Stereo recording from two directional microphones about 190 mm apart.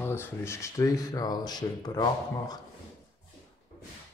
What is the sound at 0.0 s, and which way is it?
Speech, 10° left (ahead or behind).